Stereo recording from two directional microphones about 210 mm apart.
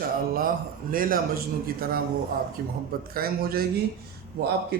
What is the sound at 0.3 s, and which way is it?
A man's voice, 40° right (ahead or behind).